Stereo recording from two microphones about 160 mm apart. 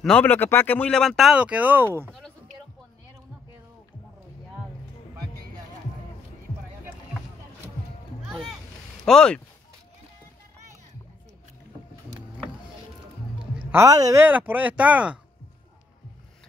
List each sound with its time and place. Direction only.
0.0 s speech: 10° left (ahead or behind); by 2.0 s 10° right (ahead or behind)
2.0 s a sound: 5° left (ahead or behind)
8.3 s music: centre (ahead or behind)
9.0 s speech: 5° left (ahead or behind)
13.7 s speech: 15° right (ahead or behind)
14.2 s speech: 10° right (ahead or behind)